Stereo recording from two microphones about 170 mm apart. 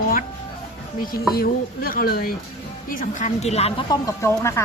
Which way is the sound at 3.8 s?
20° left (ahead or behind).